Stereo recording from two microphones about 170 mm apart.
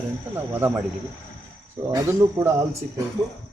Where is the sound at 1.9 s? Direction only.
15° right (ahead or behind).